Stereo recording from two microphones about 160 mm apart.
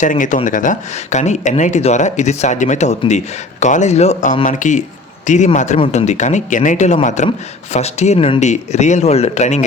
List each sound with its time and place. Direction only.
0.0 s a man's voice: 55° left (ahead or behind)